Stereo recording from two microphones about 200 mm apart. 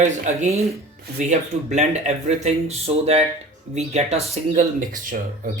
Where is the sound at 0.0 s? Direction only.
35° right (ahead or behind).